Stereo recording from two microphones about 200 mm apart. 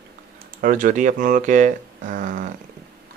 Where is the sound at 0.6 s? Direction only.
40° right (ahead or behind).